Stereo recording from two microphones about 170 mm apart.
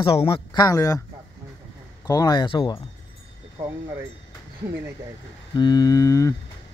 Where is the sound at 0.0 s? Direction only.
35° left (ahead or behind).